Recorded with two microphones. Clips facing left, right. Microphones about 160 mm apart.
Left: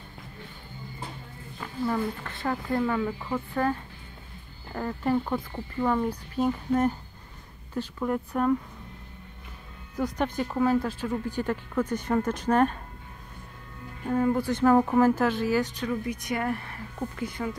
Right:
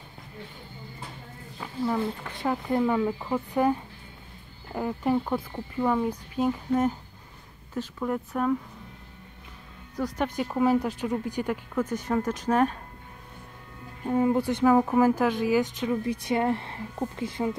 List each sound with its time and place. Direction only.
2.2 s speech: 15° right (ahead or behind)
9.9 s speech: 5° right (ahead or behind)
14.0 s speech: 15° right (ahead or behind)
14.6 s speech: 5° right (ahead or behind); by 17.6 s 25° right (ahead or behind)